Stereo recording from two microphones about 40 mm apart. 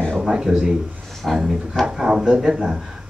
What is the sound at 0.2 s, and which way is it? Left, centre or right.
A man's voice, centre.